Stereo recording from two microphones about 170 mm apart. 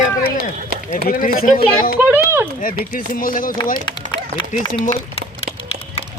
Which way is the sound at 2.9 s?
55° left (ahead or behind).